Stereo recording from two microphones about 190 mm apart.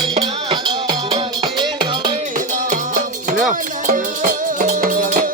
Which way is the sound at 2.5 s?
45° right (ahead or behind).